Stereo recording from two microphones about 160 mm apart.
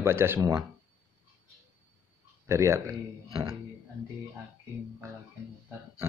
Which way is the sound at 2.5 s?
20° right (ahead or behind).